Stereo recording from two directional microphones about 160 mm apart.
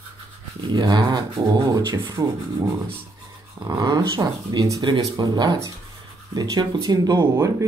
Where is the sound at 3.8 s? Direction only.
20° right (ahead or behind).